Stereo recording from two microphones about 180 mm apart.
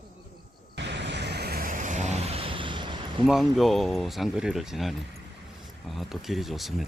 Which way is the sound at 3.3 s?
Centre (ahead or behind).